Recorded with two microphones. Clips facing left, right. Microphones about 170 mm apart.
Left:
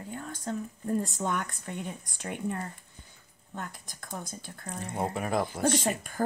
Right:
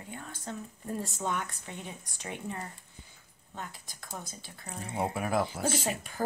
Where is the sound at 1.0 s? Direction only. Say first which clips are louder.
Left 3 dB; 45° left (ahead or behind).